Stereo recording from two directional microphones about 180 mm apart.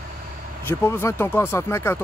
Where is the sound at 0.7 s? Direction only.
15° left (ahead or behind).